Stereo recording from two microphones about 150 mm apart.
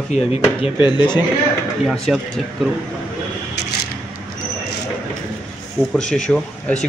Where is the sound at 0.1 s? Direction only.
45° left (ahead or behind).